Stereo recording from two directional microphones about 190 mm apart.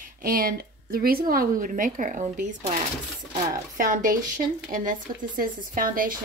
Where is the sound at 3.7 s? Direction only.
45° right (ahead or behind).